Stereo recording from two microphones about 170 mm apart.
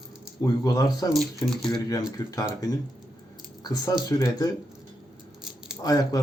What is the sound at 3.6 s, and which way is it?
Speech, 25° left (ahead or behind).